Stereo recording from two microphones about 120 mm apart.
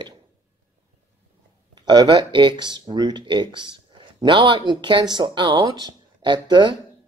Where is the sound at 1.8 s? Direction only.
40° right (ahead or behind).